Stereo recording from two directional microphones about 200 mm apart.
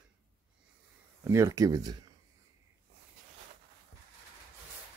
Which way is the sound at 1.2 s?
15° right (ahead or behind).